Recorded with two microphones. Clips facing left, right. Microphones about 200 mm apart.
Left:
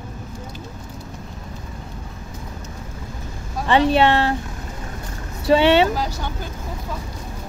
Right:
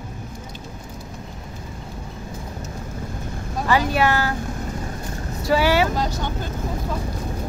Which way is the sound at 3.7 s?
25° left (ahead or behind).